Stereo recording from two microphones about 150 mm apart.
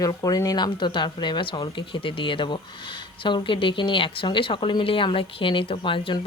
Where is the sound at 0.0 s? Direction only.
25° left (ahead or behind).